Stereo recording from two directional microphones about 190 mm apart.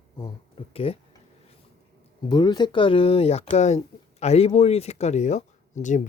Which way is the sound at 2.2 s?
20° left (ahead or behind).